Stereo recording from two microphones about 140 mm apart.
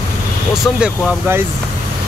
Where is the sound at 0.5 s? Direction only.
5° right (ahead or behind).